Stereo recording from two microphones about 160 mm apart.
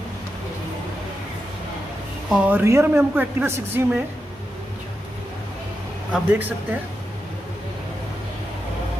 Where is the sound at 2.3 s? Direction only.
15° right (ahead or behind).